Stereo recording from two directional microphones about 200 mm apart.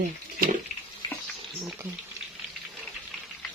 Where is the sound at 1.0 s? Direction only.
20° left (ahead or behind).